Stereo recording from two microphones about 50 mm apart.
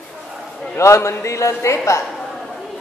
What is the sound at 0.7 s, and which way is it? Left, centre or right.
A woman's voice, left.